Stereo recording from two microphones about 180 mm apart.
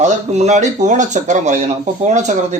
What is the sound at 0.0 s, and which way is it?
Speech, 40° right (ahead or behind).